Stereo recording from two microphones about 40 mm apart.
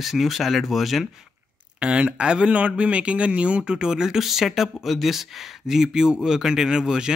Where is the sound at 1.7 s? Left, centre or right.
Right.